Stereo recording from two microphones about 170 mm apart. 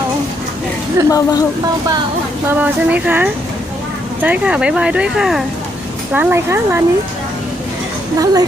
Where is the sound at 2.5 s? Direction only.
10° right (ahead or behind).